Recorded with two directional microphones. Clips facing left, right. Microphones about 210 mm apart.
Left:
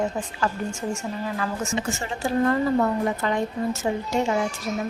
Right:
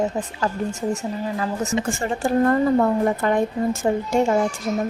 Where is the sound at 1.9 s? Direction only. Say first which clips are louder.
Right 4 dB; 50° right (ahead or behind).